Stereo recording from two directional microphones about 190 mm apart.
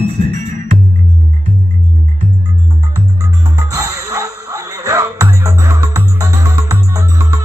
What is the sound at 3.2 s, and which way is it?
Music, 15° right (ahead or behind).